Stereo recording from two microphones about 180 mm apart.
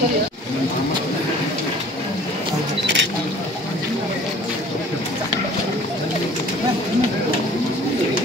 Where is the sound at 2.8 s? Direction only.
80° right.